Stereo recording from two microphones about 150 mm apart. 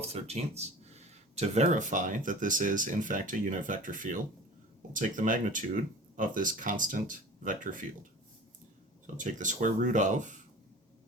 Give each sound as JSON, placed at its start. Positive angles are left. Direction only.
{"t": 0.0, "sound": "speech", "side_deg": -45}
{"t": 9.1, "sound": "speech", "side_deg": -60}